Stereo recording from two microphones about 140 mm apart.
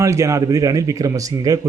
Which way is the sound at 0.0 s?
20° right (ahead or behind).